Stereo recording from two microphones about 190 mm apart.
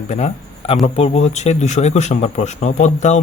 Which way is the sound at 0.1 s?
35° left (ahead or behind).